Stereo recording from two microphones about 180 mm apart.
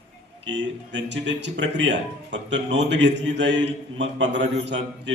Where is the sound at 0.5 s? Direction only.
85° right.